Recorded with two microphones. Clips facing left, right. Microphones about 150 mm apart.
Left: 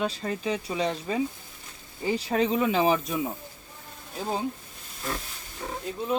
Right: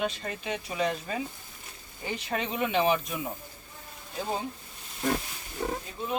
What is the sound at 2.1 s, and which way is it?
Speech, 35° left (ahead or behind).